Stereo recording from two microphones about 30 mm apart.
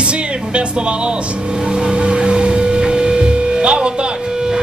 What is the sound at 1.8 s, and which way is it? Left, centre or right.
Music, right.